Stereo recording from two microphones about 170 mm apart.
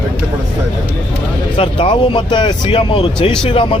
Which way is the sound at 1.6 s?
30° left (ahead or behind).